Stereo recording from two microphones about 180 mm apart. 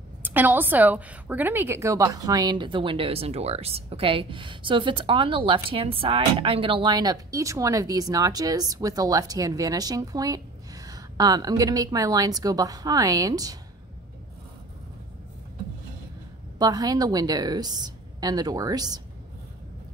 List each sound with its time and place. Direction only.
0.2 s a woman's voice: 10° right (ahead or behind)
16.5 s a woman's voice: 20° right (ahead or behind)